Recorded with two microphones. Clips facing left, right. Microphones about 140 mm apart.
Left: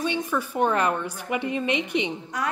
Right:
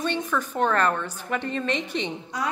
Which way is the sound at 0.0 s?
10° left (ahead or behind).